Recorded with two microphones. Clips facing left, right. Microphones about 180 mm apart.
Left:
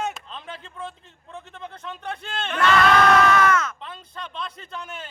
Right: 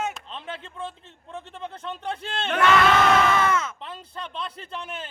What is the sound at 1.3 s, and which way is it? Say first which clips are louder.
Bleat: right 2 dB; 30° right (ahead or behind).